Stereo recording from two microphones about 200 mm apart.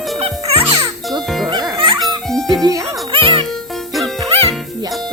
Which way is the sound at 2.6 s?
15° right (ahead or behind).